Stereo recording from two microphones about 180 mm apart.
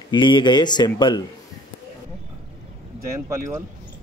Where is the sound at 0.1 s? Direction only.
25° left (ahead or behind).